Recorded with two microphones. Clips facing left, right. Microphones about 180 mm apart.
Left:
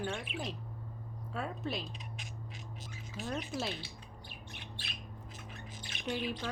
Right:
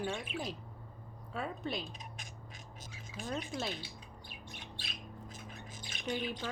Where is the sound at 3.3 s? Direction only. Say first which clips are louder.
Left 1 dB; centre (ahead or behind).